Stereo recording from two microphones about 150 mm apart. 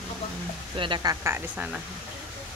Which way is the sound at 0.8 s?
30° right (ahead or behind).